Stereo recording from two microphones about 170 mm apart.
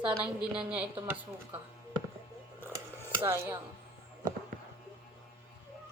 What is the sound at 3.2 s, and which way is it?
Speech, 15° right (ahead or behind).